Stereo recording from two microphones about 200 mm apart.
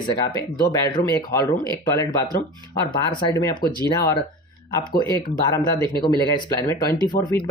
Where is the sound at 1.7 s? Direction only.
15° left (ahead or behind).